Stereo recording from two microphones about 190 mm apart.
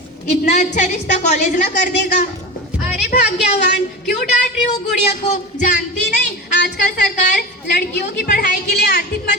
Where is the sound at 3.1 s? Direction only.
40° left (ahead or behind).